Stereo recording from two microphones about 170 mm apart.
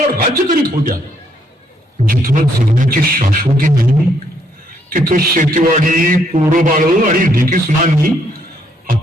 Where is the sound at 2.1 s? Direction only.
55° right (ahead or behind).